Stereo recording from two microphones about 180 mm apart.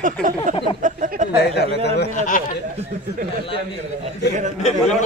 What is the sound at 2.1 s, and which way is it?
Speech, 45° left (ahead or behind).